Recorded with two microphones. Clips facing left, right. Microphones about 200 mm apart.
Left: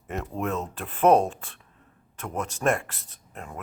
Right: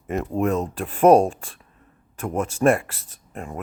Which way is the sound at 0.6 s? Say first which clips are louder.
Right 3 dB; 10° right (ahead or behind).